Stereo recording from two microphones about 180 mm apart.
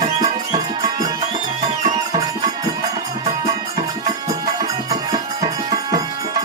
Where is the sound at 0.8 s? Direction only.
20° right (ahead or behind).